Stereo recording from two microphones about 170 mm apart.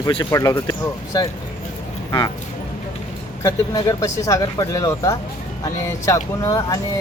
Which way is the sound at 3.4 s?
20° left (ahead or behind).